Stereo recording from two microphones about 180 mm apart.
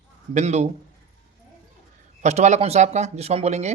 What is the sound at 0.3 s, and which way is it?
Speech, 40° right (ahead or behind).